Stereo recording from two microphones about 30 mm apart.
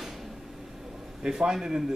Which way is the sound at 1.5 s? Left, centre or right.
Right.